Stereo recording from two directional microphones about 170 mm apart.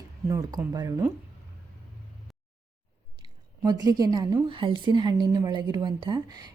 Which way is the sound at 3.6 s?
25° right (ahead or behind).